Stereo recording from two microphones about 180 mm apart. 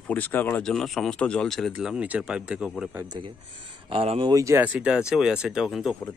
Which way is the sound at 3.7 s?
30° right (ahead or behind).